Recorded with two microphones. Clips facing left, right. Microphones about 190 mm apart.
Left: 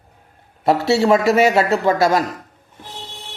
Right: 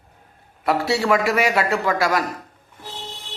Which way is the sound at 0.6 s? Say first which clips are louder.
Left 5 dB; 25° left (ahead or behind).